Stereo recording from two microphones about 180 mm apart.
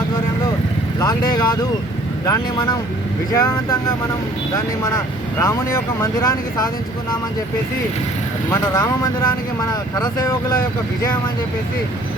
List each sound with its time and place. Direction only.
0.9 s speech: 20° left (ahead or behind)
5.4 s speech: 15° left (ahead or behind)
8.4 s speech: 20° left (ahead or behind)